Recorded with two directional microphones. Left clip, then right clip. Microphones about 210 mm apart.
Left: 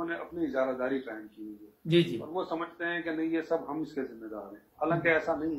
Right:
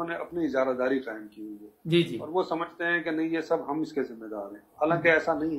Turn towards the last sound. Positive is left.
turn(degrees=-45)  # may be behind; listen again after turning